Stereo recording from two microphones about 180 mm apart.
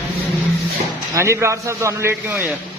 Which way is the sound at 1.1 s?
15° right (ahead or behind).